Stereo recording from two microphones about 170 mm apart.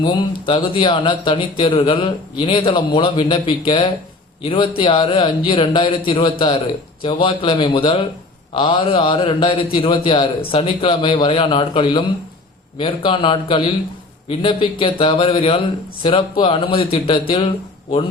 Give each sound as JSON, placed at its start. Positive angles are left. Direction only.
{"t": 0.0, "sound": "a man's voice", "side_deg": 30}